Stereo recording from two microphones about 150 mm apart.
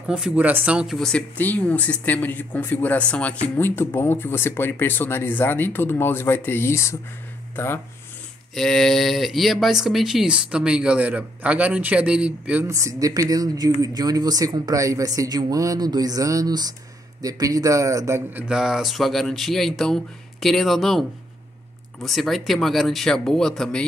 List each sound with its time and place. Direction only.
0.1 s speech: 10° right (ahead or behind)
0.9 s speech: 5° left (ahead or behind)
8.5 s speech: centre (ahead or behind)
12.6 s speech: 20° right (ahead or behind)
18.5 s speech: 5° right (ahead or behind)
22.0 s speech: centre (ahead or behind)